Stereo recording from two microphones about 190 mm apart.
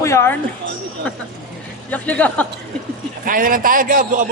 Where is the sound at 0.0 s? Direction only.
15° left (ahead or behind).